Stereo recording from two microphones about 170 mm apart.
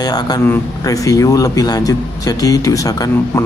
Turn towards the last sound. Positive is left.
turn(degrees=20)  # may be behind; listen again after turning